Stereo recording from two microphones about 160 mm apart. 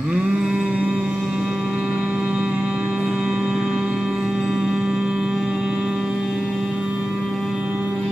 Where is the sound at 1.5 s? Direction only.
5° right (ahead or behind).